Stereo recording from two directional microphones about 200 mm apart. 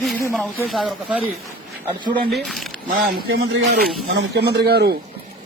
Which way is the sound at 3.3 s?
55° right (ahead or behind).